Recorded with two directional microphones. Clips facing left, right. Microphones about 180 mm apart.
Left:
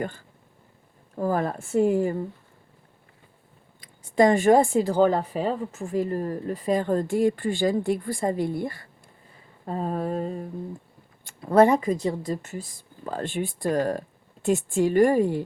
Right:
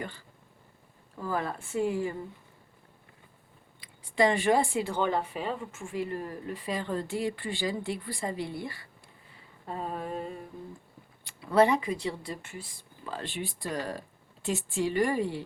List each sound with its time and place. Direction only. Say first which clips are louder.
1.1 s speech: left 7 dB; 45° left (ahead or behind)
3.8 s speech: left 6 dB; 45° left (ahead or behind)
9.6 s a sound: left 7 dB; 40° left (ahead or behind)
11.3 s speech: left 5 dB; 45° left (ahead or behind)